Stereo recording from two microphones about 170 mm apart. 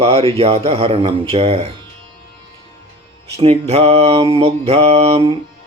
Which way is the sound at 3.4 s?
35° right (ahead or behind).